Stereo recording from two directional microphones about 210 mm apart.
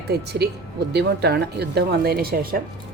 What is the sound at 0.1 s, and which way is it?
Speech, 50° right (ahead or behind).